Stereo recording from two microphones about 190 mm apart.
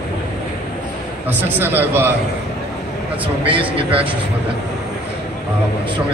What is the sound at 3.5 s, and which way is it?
Speech, 30° right (ahead or behind).